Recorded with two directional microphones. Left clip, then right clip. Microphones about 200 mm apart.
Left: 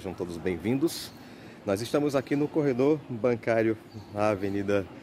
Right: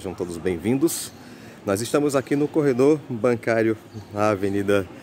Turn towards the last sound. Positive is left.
turn(degrees=-10)  # may be behind; listen again after turning